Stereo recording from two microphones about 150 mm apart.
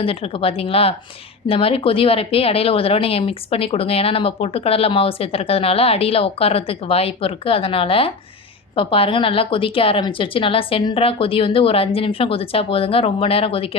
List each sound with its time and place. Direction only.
0.0 s a woman's voice: 40° left (ahead or behind)